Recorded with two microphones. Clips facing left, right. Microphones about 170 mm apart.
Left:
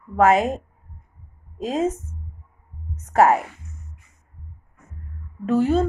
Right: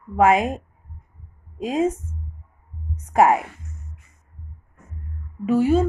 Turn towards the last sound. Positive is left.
turn(degrees=-10)  # may be behind; listen again after turning